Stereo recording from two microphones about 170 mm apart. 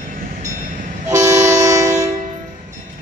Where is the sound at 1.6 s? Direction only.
20° right (ahead or behind).